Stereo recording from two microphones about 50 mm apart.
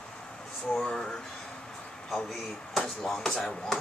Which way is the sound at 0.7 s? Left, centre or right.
Centre.